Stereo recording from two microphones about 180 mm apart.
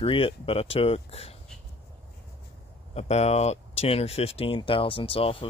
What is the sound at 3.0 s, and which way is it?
Speech, 35° left (ahead or behind).